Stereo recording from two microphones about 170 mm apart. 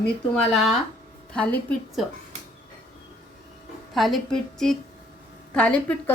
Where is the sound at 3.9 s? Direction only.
Centre (ahead or behind).